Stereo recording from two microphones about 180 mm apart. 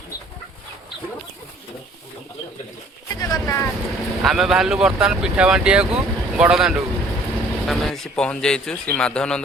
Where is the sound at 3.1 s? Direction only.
20° left (ahead or behind).